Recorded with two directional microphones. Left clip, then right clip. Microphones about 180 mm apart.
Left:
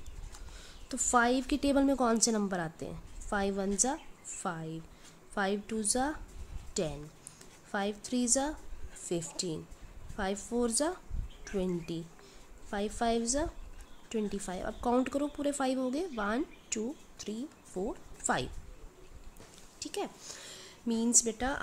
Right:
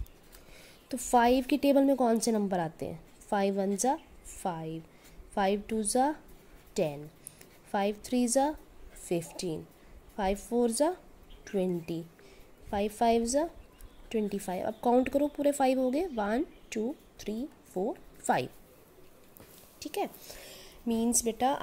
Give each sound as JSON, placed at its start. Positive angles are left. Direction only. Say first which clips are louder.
{"t": 0.6, "sound": "a woman's voice", "louder": "left 1 dB", "side_deg": -10}
{"t": 19.8, "sound": "speech", "louder": "right 3 dB", "side_deg": -15}
{"t": 20.2, "sound": "speech", "louder": "left 1 dB", "side_deg": 0}
{"t": 20.6, "sound": "a sound", "louder": "right 2 dB", "side_deg": 35}
{"t": 21.2, "sound": "speech", "louder": "right 4 dB", "side_deg": -10}